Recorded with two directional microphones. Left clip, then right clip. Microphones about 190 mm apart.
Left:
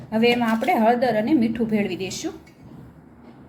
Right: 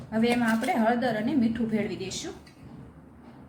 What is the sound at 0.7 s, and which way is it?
A woman's voice, 35° left (ahead or behind).